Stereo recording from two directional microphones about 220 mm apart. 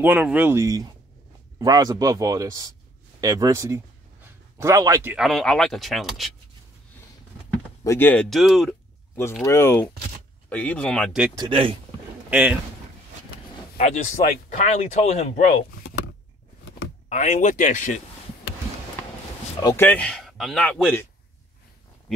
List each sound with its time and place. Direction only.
0.0 s a man's voice: 5° right (ahead or behind)
7.8 s speech: 10° left (ahead or behind)
9.1 s speech: 10° left (ahead or behind)
11.3 s speech: 25° right (ahead or behind)
12.3 s speech: 5° right (ahead or behind)
13.7 s speech: 30° left (ahead or behind)
17.1 s speech: 35° left (ahead or behind)
19.6 s speech: 10° left (ahead or behind)